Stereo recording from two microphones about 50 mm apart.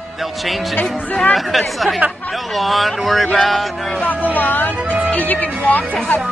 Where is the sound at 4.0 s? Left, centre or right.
Left.